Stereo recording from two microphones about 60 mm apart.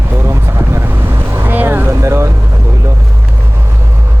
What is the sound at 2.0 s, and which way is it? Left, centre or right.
Speech, right.